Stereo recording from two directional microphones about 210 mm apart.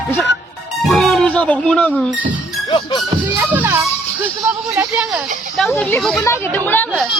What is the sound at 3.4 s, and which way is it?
A child's voice, 10° right (ahead or behind).